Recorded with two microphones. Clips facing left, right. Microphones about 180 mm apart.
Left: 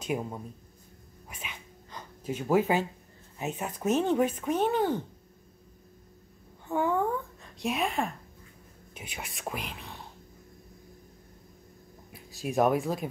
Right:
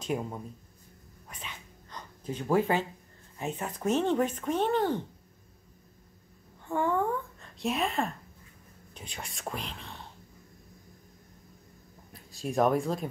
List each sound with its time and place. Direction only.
0.0 s a man's voice: 5° left (ahead or behind)
1.3 s dog: 10° left (ahead or behind)
3.4 s speech: 5° left (ahead or behind)
6.7 s speech: 5° left (ahead or behind)
12.1 s speech: 5° left (ahead or behind)